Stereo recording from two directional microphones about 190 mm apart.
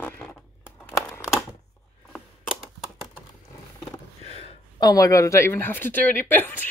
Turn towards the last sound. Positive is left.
turn(degrees=10)  # may be behind; listen again after turning